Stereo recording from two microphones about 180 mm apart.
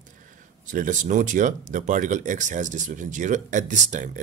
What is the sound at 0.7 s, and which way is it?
Speech, 45° right (ahead or behind).